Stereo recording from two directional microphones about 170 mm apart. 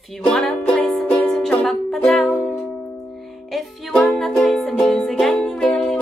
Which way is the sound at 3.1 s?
Centre (ahead or behind).